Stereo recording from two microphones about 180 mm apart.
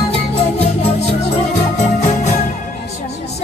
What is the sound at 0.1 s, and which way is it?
Music, 35° left (ahead or behind).